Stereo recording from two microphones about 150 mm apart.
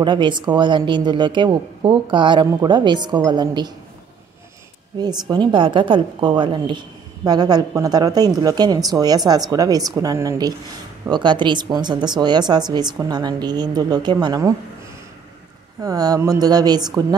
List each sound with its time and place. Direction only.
0.0 s a woman's voice: 30° right (ahead or behind)
5.3 s speech: 30° right (ahead or behind)
15.8 s speech: 25° right (ahead or behind)